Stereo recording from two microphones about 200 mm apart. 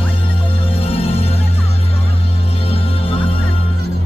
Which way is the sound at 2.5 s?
30° left (ahead or behind).